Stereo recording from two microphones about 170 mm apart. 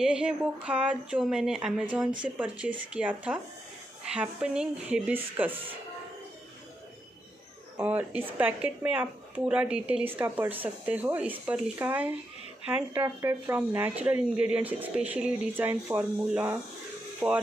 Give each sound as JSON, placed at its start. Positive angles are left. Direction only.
{"t": 0.0, "sound": "speech", "side_deg": -5}
{"t": 7.7, "sound": "speech", "side_deg": -10}